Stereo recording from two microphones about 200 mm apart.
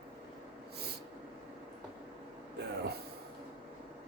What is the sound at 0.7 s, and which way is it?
Snort, 55° right (ahead or behind).